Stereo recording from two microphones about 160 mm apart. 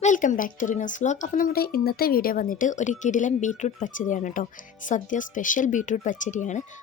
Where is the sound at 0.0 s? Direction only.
50° left (ahead or behind).